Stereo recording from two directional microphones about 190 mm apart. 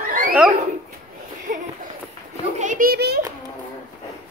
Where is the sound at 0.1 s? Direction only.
45° right (ahead or behind).